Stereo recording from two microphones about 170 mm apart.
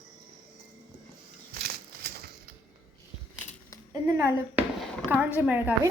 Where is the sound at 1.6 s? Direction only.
65° right (ahead or behind).